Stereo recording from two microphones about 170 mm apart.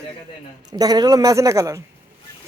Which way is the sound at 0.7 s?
20° right (ahead or behind).